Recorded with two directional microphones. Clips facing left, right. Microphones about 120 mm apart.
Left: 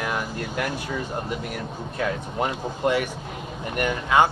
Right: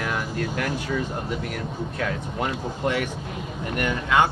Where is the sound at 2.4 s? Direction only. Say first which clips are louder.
Left 2 dB; 20° left (ahead or behind).